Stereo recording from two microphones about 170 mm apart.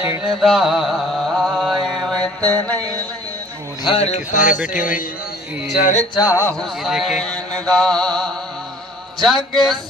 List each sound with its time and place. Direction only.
0.2 s mantra: centre (ahead or behind)
3.8 s a man's voice: 35° left (ahead or behind); by 5.0 s 50° left (ahead or behind)
6.1 s speech: 20° left (ahead or behind)
6.6 s mantra: centre (ahead or behind)